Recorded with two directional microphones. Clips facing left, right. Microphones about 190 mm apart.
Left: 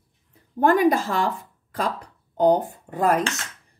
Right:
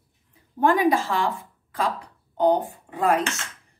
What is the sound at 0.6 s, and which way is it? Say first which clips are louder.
Speech: left 2 dB; 45° left (ahead or behind).